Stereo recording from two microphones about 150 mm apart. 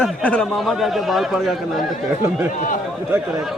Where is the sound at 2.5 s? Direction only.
65° left (ahead or behind).